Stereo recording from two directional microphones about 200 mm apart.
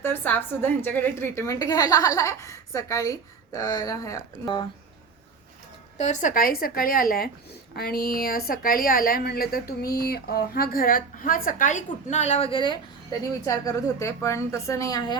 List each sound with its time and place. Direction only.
0.0 s a woman's voice: 10° left (ahead or behind)
6.0 s a woman's voice: 40° left (ahead or behind); by 15.2 s 20° left (ahead or behind)